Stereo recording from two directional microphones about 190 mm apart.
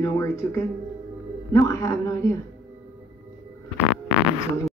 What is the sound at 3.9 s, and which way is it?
Fart, 5° right (ahead or behind).